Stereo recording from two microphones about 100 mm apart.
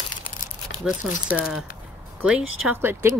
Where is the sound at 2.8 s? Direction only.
25° right (ahead or behind).